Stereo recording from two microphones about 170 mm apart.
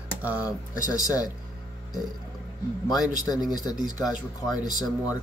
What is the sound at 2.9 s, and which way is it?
Speech, 20° left (ahead or behind).